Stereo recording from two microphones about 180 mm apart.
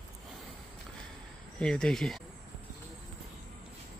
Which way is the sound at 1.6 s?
5° left (ahead or behind).